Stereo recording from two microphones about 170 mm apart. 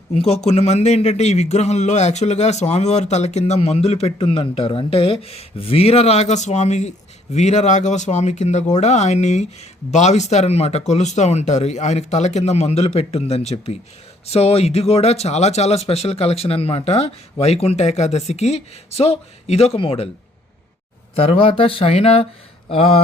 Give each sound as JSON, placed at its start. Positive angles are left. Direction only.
{"t": 0.2, "sound": "a man's voice", "side_deg": 40}
{"t": 21.2, "sound": "a man's voice", "side_deg": 35}